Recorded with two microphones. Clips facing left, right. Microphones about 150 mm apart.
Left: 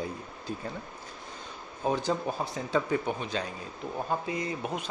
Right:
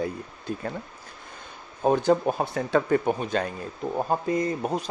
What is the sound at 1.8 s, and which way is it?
Speech, 55° right (ahead or behind).